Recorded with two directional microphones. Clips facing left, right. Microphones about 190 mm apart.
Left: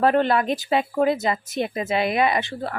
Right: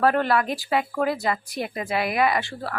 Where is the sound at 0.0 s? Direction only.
20° left (ahead or behind).